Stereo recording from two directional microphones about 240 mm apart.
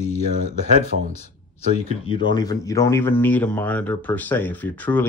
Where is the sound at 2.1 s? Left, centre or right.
Centre.